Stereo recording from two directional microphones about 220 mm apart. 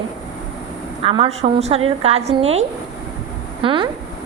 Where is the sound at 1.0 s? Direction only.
25° right (ahead or behind).